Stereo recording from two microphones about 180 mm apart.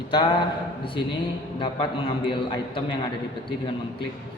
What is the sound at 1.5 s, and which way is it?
A man's voice, 30° left (ahead or behind).